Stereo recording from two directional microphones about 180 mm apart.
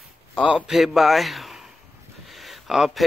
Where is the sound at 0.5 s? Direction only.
5° right (ahead or behind).